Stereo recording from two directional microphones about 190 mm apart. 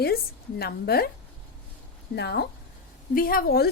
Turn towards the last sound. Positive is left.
turn(degrees=55)  # may be behind; listen again after turning